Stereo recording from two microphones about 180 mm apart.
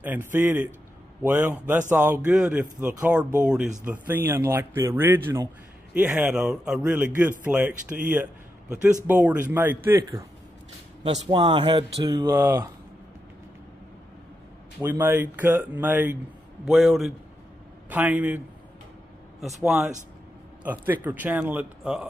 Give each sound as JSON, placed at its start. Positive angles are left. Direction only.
{"t": 0.0, "sound": "a man's voice", "side_deg": -10}
{"t": 11.2, "sound": "speech", "side_deg": -25}
{"t": 14.8, "sound": "a man's voice", "side_deg": -10}
{"t": 19.6, "sound": "a man's voice", "side_deg": -10}